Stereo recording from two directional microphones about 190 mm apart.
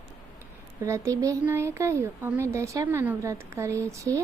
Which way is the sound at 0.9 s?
15° right (ahead or behind).